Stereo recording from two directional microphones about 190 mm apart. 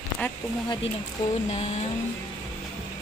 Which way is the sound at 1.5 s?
35° left (ahead or behind).